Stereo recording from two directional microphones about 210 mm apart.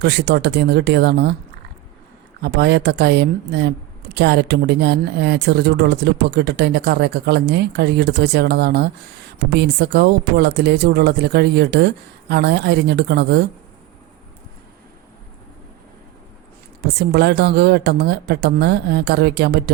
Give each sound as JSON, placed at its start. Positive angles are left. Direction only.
{"t": 0.0, "sound": "speech", "side_deg": -50}
{"t": 2.4, "sound": "speech", "side_deg": -50}
{"t": 17.0, "sound": "speech", "side_deg": -50}